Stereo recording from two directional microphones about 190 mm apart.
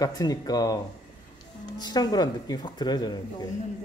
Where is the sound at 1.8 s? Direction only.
20° left (ahead or behind).